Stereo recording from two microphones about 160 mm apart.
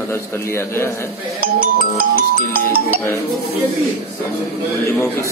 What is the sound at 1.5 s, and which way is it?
Music, 65° right (ahead or behind).